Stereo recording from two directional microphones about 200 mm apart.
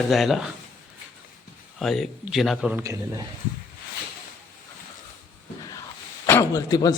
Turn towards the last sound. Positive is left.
turn(degrees=20)  # may be behind; listen again after turning